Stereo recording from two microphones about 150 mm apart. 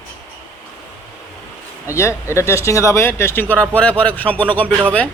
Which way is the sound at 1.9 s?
20° left (ahead or behind).